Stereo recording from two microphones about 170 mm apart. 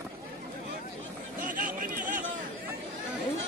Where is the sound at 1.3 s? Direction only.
50° right (ahead or behind).